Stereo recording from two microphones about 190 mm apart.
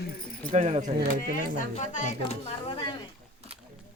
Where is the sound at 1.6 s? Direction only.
40° left (ahead or behind).